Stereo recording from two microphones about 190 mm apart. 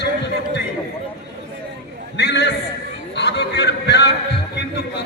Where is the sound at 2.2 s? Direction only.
65° left (ahead or behind).